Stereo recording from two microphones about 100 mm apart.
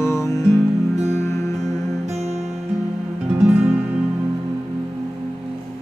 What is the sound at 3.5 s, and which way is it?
Guitar, 20° right (ahead or behind).